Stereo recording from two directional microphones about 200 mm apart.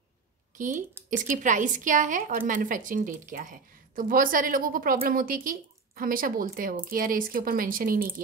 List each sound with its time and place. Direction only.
1.1 s a woman's voice: 40° right (ahead or behind)